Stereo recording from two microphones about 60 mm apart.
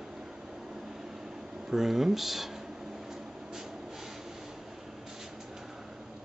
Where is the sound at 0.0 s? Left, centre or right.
Centre.